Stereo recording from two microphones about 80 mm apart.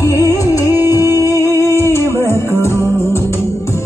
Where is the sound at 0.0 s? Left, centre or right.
Left.